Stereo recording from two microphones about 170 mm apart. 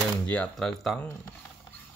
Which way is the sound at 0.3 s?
5° left (ahead or behind).